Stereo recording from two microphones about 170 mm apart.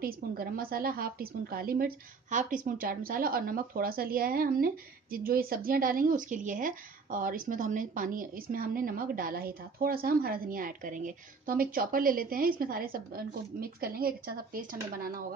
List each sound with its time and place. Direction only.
0.0 s a woman's voice: 60° right (ahead or behind)